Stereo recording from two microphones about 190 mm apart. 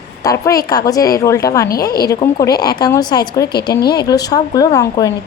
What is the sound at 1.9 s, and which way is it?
Speech, 55° left (ahead or behind).